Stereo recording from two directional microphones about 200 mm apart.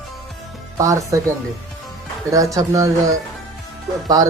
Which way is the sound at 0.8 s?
15° right (ahead or behind).